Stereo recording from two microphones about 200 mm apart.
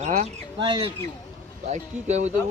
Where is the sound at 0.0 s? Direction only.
35° right (ahead or behind).